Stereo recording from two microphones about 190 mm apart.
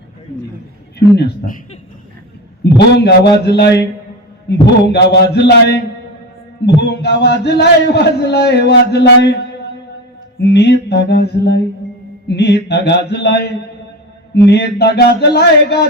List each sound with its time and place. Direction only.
0.9 s a man's voice: 60° left (ahead or behind)
2.6 s a man's voice: 65° left (ahead or behind)